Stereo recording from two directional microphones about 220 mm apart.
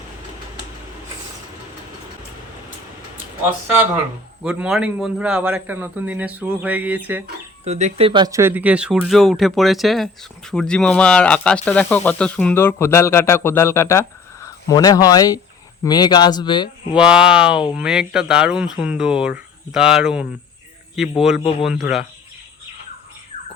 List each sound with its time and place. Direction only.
4.4 s a man's voice: 5° right (ahead or behind)
7.6 s speech: 30° right (ahead or behind); by 16.6 s 20° left (ahead or behind)
16.9 s speech: 5° right (ahead or behind)